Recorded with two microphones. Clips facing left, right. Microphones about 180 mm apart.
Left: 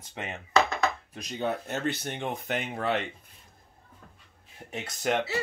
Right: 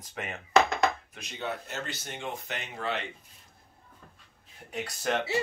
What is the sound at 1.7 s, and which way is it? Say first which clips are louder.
Speech: left 7 dB; 60° left (ahead or behind).